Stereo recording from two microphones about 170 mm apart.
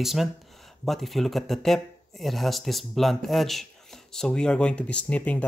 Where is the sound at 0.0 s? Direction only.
Centre (ahead or behind).